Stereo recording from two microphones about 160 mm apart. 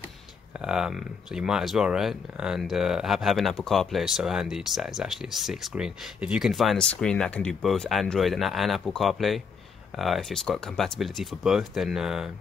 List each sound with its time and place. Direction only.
0.6 s speech: 5° right (ahead or behind)